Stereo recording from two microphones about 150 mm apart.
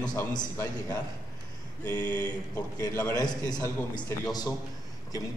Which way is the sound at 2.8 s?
20° left (ahead or behind).